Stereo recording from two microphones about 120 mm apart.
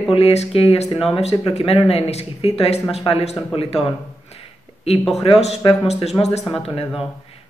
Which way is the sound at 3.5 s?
50° left (ahead or behind).